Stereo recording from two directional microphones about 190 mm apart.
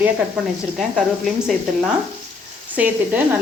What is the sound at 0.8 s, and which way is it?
Speech, centre (ahead or behind).